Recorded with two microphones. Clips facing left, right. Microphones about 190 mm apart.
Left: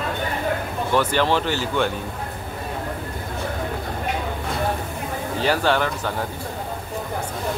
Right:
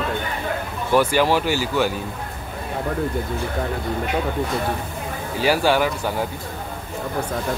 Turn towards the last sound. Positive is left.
turn(degrees=-10)  # may be behind; listen again after turning